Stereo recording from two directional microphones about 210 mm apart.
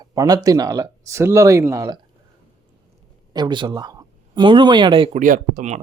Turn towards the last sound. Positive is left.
turn(degrees=-35)  # may be behind; listen again after turning